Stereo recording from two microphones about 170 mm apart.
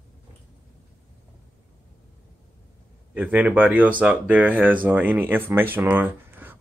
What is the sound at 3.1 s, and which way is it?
Speech, 10° right (ahead or behind).